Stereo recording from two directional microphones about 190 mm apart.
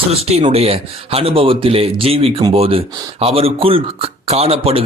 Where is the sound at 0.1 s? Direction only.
30° right (ahead or behind).